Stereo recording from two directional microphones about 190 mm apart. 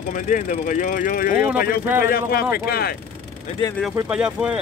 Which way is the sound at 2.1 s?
50° left (ahead or behind).